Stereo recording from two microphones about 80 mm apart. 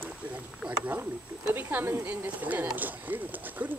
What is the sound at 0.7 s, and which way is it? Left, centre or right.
Speech, right.